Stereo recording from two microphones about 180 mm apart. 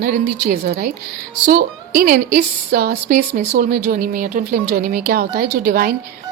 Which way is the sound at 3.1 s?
50° right (ahead or behind).